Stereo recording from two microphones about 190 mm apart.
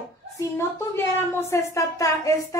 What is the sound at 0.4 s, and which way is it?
A woman's voice, 15° left (ahead or behind).